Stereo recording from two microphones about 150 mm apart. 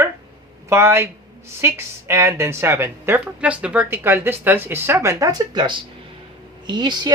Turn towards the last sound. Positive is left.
turn(degrees=-30)  # may be behind; listen again after turning